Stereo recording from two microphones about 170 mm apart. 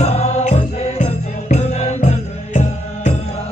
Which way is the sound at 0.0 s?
40° left (ahead or behind).